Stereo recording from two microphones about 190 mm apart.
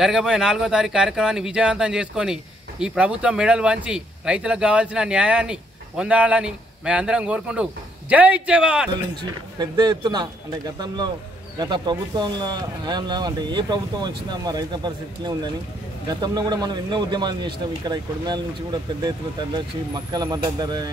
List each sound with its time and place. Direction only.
0.0 s speech: 5° right (ahead or behind)
9.1 s speech: 25° right (ahead or behind)
11.5 s speech: 20° right (ahead or behind)
16.1 s speech: 20° right (ahead or behind)